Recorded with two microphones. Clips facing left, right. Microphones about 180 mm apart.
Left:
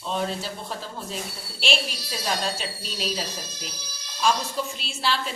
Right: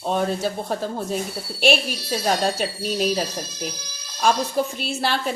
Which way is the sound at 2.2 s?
50° right (ahead or behind).